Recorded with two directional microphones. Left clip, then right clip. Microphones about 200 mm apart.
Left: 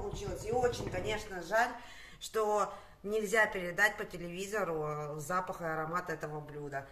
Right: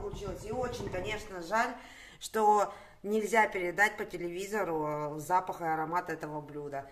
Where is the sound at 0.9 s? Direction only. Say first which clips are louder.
Even; 25° right (ahead or behind).